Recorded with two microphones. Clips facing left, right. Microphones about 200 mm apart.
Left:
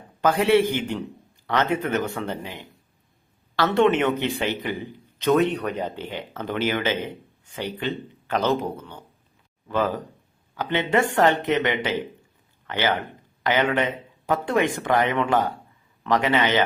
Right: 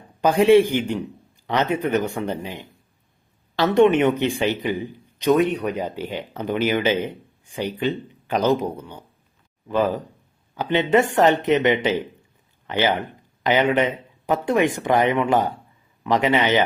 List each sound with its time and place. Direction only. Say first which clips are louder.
0.2 s a man's voice: right 4 dB; 15° right (ahead or behind)